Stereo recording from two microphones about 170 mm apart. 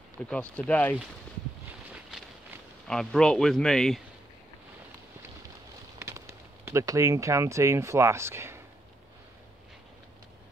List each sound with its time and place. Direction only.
0.3 s speech: 5° left (ahead or behind)
2.9 s speech: 5° left (ahead or behind)
5.9 s speech: 15° right (ahead or behind)